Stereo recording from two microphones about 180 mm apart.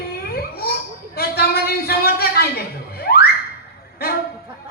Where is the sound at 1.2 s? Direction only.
60° left (ahead or behind).